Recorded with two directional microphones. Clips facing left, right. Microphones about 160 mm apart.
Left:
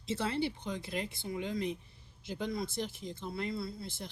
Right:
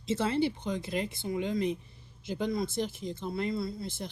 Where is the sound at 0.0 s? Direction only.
20° right (ahead or behind).